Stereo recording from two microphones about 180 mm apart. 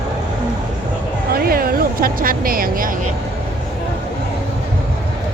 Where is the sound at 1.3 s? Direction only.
55° right (ahead or behind).